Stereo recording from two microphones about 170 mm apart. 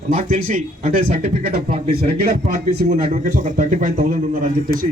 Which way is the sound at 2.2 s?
55° right (ahead or behind).